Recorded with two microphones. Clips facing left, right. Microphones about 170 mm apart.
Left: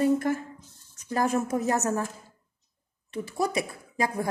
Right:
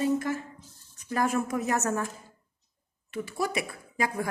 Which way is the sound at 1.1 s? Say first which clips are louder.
Left 2 dB; 35° left (ahead or behind).